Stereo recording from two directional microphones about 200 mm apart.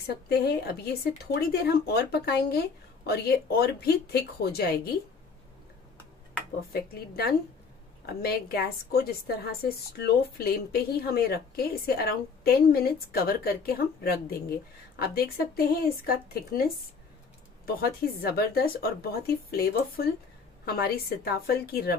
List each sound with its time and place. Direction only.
0.0 s a woman's voice: 50° left (ahead or behind)
6.7 s a woman's voice: 50° left (ahead or behind)
18.2 s a woman's voice: 50° left (ahead or behind)